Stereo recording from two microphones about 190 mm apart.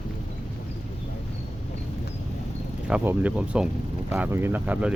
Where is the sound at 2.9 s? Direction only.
5° right (ahead or behind).